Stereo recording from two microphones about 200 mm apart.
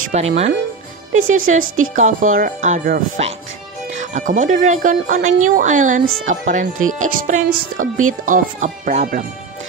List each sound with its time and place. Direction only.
0.0 s speech: 40° right (ahead or behind)
1.1 s speech: 90° right
1.4 s a woman's voice: 45° right (ahead or behind)
3.2 s speech: 30° right (ahead or behind)